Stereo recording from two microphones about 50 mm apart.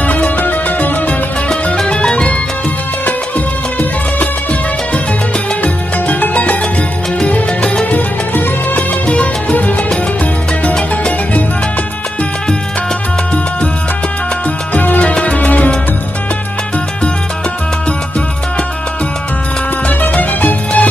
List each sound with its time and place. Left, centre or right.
0.0 s music: left
1.9 s music: centre
5.6 s music: left
7.9 s music: left
14.7 s music: left
20.1 s music: left